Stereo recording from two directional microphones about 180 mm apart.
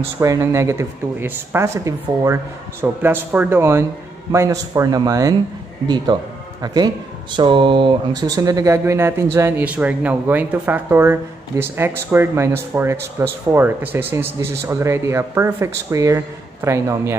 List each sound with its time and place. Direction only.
0.2 s speech: 15° right (ahead or behind)